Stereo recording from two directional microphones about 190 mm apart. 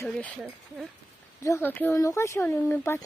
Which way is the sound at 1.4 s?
15° left (ahead or behind).